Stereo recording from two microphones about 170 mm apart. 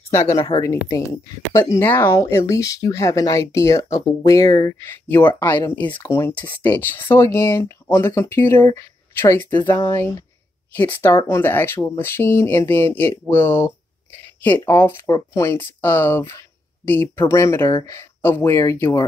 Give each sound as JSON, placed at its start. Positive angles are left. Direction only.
{"t": 0.1, "sound": "a woman's voice", "side_deg": 15}